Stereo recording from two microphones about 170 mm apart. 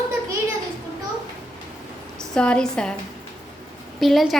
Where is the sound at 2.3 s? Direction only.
5° left (ahead or behind).